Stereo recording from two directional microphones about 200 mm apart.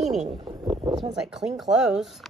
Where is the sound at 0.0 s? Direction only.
Centre (ahead or behind).